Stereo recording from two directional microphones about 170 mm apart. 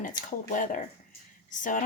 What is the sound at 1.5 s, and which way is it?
Speech, 50° left (ahead or behind).